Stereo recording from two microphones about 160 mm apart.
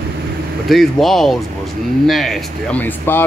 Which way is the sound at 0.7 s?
Centre (ahead or behind).